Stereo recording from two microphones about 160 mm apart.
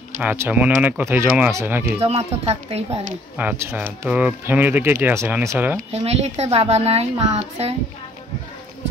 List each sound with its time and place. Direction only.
0.2 s speech: 10° right (ahead or behind)
2.0 s speech: 40° right (ahead or behind)
3.3 s speech: 10° right (ahead or behind)
5.8 s speech: 40° right (ahead or behind)